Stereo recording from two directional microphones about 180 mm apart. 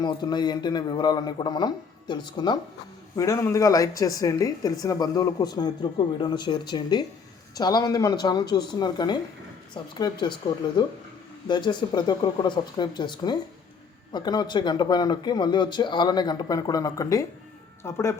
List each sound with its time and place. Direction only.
0.0 s speech: 25° left (ahead or behind)
11.4 s speech: 25° left (ahead or behind)